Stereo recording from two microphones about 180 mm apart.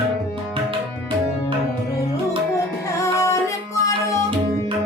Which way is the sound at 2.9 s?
15° left (ahead or behind).